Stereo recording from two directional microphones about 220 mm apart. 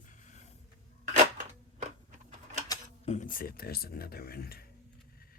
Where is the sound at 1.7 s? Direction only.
30° right (ahead or behind).